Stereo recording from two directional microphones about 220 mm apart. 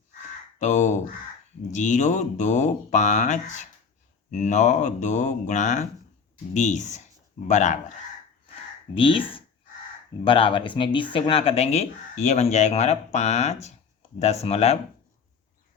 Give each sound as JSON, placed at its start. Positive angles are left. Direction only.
{"t": 0.6, "sound": "speech", "side_deg": 35}
{"t": 9.0, "sound": "speech", "side_deg": 25}